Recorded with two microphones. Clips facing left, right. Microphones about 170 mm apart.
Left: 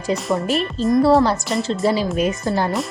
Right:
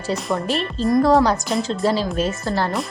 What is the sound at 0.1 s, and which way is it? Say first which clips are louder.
A woman's voice: left 2 dB; centre (ahead or behind).